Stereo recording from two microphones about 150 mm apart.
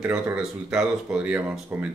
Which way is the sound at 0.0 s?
5° right (ahead or behind).